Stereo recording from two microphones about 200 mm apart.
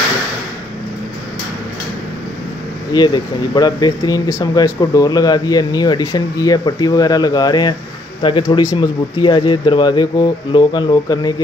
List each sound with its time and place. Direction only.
2.9 s speech: 20° left (ahead or behind)